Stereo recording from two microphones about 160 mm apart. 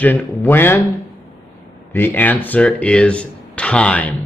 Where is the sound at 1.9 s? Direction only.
10° left (ahead or behind).